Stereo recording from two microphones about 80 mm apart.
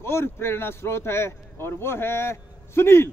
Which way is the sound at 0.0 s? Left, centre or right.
Left.